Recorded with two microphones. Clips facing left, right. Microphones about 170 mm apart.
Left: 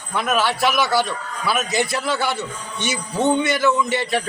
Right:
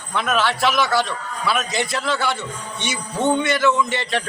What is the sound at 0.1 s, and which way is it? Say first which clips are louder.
A man's voice: even; 5° left (ahead or behind).